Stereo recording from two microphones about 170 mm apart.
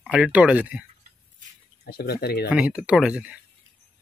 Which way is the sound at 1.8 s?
65° left (ahead or behind).